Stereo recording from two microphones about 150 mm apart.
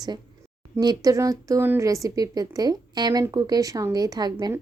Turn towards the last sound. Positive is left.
turn(degrees=-25)  # may be behind; listen again after turning